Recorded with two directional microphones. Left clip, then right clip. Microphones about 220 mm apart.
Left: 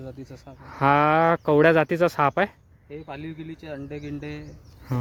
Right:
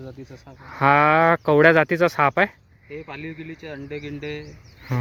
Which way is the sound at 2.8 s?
15° left (ahead or behind).